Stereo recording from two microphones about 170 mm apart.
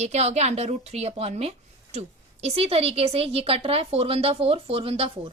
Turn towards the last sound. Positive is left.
turn(degrees=-35)  # may be behind; listen again after turning